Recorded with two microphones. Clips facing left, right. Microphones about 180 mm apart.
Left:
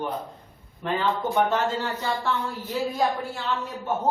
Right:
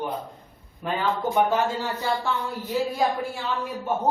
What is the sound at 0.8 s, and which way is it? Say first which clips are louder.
A woman's voice: even; 5° right (ahead or behind).